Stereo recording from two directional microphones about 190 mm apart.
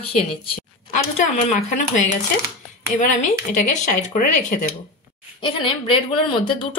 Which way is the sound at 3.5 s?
40° left (ahead or behind).